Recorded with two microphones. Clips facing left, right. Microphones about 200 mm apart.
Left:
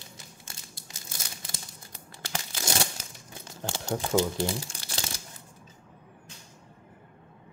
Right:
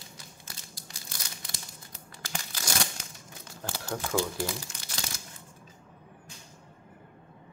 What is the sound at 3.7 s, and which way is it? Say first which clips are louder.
Crumpling: left 4 dB; 25° left (ahead or behind).